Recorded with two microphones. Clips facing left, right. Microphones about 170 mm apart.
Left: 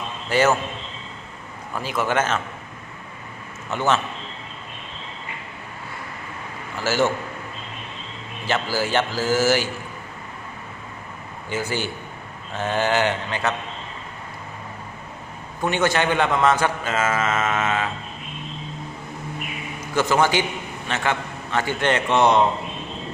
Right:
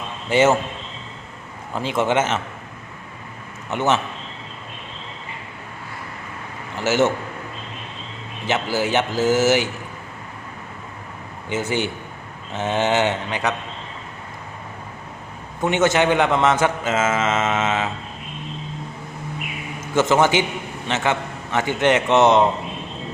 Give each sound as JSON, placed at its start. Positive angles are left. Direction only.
{"t": 0.3, "sound": "a man's voice", "side_deg": -20}
{"t": 1.7, "sound": "a man's voice", "side_deg": -25}
{"t": 3.7, "sound": "a man's voice", "side_deg": -20}
{"t": 6.8, "sound": "a man's voice", "side_deg": -20}
{"t": 8.4, "sound": "a man's voice", "side_deg": -20}
{"t": 11.4, "sound": "a man's voice", "side_deg": -20}
{"t": 15.6, "sound": "a man's voice", "side_deg": -20}
{"t": 19.9, "sound": "a man's voice", "side_deg": -20}